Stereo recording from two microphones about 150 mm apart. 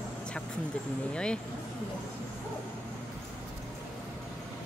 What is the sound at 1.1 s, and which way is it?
Speech, 5° left (ahead or behind).